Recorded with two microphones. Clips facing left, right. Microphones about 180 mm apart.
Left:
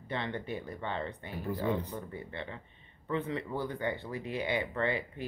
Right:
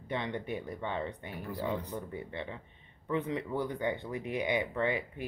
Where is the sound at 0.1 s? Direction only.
15° right (ahead or behind).